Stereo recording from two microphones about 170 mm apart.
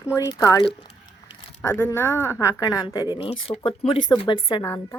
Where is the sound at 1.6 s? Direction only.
10° left (ahead or behind).